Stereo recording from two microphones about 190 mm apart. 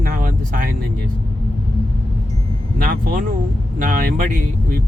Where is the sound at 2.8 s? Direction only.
45° right (ahead or behind).